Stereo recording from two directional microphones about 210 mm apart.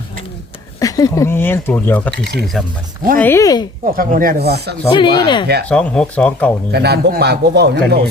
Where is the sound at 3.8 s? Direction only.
40° right (ahead or behind).